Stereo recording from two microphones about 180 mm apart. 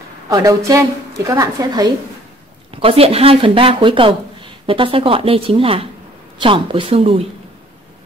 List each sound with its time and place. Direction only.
0.3 s a woman's voice: 20° right (ahead or behind)